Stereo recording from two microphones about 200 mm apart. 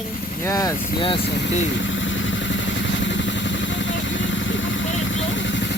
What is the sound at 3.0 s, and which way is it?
Vehicle, 65° left (ahead or behind).